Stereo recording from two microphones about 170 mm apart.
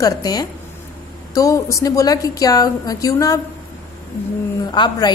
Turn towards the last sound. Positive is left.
turn(degrees=25)  # may be behind; listen again after turning